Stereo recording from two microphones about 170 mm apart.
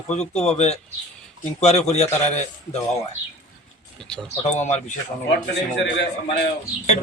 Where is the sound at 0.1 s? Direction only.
40° left (ahead or behind).